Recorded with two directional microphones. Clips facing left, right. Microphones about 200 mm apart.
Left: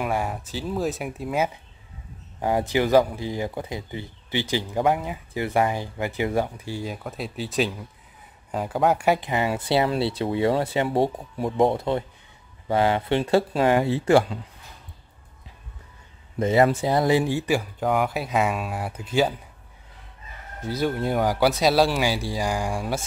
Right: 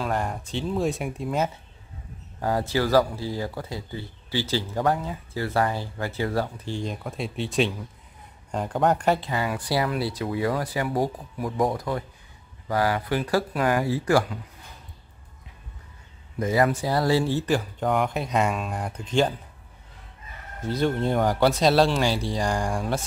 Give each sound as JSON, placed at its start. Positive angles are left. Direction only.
{"t": 0.0, "sound": "speech", "side_deg": 10}
{"t": 16.3, "sound": "speech", "side_deg": 25}
{"t": 20.8, "sound": "speech", "side_deg": 5}